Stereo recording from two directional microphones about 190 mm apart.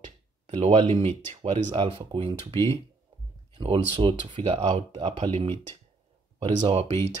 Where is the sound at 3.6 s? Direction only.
25° right (ahead or behind).